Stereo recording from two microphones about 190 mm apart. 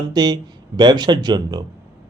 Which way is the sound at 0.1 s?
20° right (ahead or behind).